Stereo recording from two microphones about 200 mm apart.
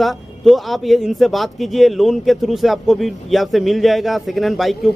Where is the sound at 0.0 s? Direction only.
Centre (ahead or behind).